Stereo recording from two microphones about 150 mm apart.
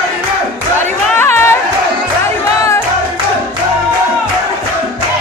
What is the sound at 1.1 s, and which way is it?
Chatter, 15° left (ahead or behind).